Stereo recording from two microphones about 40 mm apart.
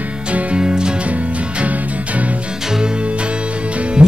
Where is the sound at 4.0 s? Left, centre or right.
Right.